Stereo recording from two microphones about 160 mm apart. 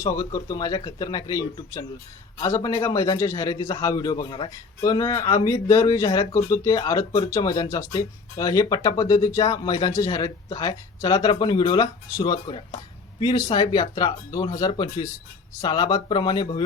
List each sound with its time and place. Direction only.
0.0 s speech: 20° left (ahead or behind)